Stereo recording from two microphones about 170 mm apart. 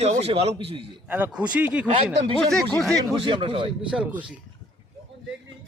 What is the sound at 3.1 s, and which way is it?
Speech, 30° right (ahead or behind).